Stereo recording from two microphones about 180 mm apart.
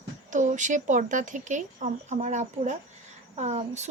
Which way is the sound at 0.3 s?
45° right (ahead or behind).